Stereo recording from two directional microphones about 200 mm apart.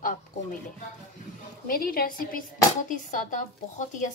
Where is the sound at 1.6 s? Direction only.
45° left (ahead or behind).